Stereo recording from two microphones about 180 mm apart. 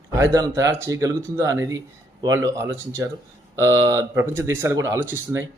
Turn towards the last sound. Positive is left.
turn(degrees=-15)  # may be behind; listen again after turning